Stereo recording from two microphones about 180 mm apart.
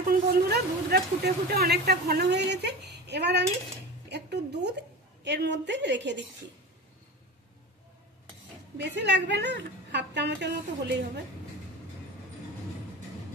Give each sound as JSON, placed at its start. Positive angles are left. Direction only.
{"t": 0.0, "sound": "a woman's voice", "side_deg": -60}
{"t": 8.7, "sound": "a woman's voice", "side_deg": -75}